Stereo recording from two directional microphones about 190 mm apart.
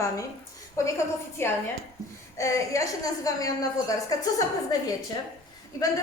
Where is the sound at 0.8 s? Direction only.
15° left (ahead or behind).